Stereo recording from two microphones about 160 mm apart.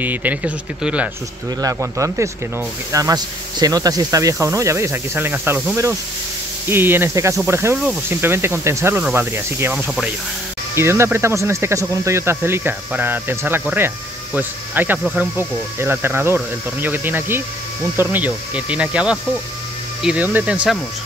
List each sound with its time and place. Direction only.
0.0 s speech: 10° right (ahead or behind)
1.6 s speech: 20° right (ahead or behind)